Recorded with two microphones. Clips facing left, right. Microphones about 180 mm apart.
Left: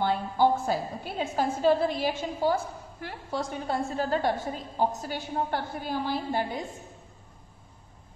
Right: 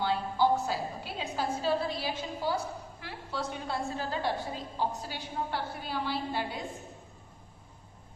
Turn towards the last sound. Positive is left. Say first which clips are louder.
# left 4 dB
turn(degrees=45)  # may be behind; listen again after turning